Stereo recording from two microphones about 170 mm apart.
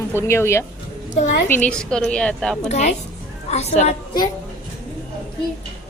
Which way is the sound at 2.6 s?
40° left (ahead or behind).